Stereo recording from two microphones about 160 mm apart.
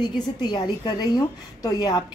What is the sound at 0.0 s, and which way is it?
Speech, 25° left (ahead or behind).